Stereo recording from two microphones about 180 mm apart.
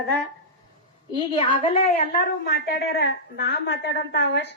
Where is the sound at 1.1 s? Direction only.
25° left (ahead or behind).